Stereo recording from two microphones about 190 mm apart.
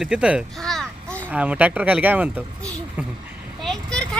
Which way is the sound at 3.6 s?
5° left (ahead or behind).